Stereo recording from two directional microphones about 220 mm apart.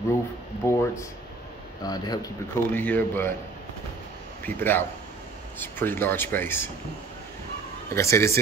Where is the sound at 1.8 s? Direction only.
15° left (ahead or behind).